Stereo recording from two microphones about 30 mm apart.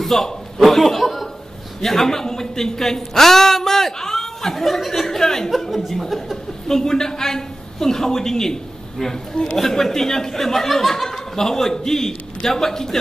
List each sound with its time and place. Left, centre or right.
0.0 s a man's voice: centre
6.7 s a man's voice: centre